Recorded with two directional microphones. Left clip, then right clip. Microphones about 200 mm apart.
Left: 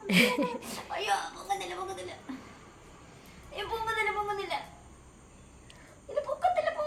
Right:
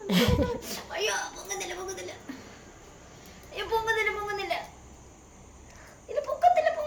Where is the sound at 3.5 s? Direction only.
10° left (ahead or behind).